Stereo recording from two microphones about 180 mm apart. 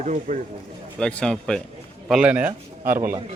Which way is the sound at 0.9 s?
5° left (ahead or behind).